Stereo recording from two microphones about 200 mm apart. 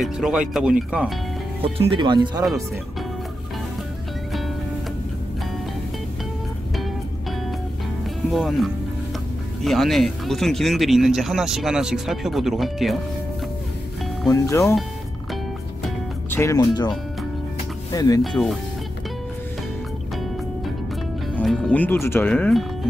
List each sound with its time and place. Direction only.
0.0 s speech: 5° right (ahead or behind)
1.8 s speech: 25° right (ahead or behind)
8.3 s speech: centre (ahead or behind)
14.3 s speech: 15° left (ahead or behind)
16.3 s speech: 15° left (ahead or behind)
17.9 s speech: 20° left (ahead or behind)
18.2 s speech: centre (ahead or behind)
21.4 s speech: 5° left (ahead or behind)